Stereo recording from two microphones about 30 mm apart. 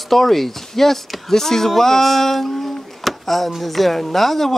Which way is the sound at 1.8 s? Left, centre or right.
Centre.